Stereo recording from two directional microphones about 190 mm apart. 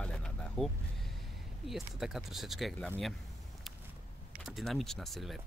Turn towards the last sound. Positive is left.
turn(degrees=0)  # may be behind; listen again after turning